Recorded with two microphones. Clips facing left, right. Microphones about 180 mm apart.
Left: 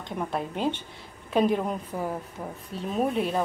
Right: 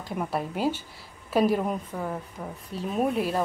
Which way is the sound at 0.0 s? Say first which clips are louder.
Right 1 dB; 5° right (ahead or behind).